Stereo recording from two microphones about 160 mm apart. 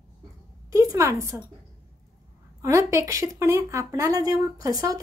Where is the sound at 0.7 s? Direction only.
20° right (ahead or behind).